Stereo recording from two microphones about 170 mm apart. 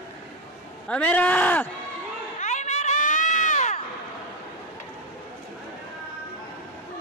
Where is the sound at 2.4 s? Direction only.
45° left (ahead or behind).